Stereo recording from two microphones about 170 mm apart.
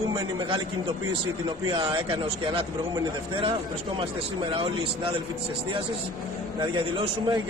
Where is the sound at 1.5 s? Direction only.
30° right (ahead or behind).